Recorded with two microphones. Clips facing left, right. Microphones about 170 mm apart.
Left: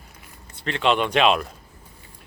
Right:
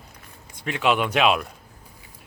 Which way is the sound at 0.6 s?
10° right (ahead or behind).